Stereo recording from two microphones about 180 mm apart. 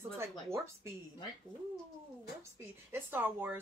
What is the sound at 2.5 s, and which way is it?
Speech, 10° right (ahead or behind).